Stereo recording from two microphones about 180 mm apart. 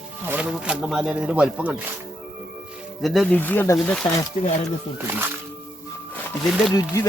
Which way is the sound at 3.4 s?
10° left (ahead or behind).